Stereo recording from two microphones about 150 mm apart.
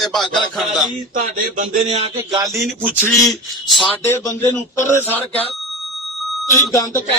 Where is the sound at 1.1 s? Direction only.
65° right (ahead or behind).